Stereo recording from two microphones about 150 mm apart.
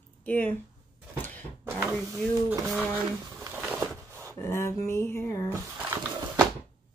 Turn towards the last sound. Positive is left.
turn(degrees=-15)  # may be behind; listen again after turning